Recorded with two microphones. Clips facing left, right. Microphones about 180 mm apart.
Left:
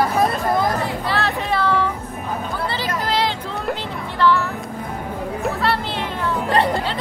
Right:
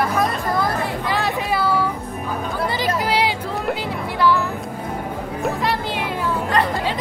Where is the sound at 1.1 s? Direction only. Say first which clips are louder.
Even; 15° right (ahead or behind).